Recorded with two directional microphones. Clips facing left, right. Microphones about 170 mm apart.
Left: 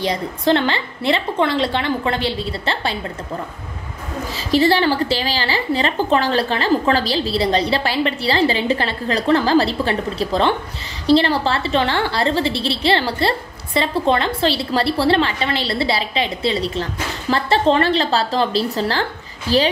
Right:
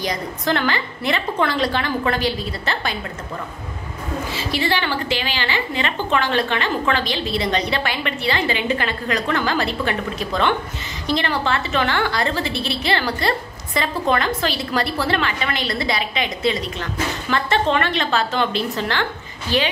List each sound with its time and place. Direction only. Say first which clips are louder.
0.0 s a woman's voice: left 4 dB; 25° left (ahead or behind)
4.3 s a woman's voice: left 8 dB; 40° left (ahead or behind)